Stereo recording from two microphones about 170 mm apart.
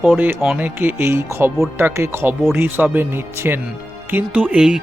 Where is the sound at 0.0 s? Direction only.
Centre (ahead or behind).